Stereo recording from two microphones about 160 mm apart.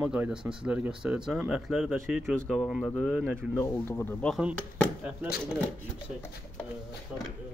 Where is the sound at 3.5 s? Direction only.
15° left (ahead or behind).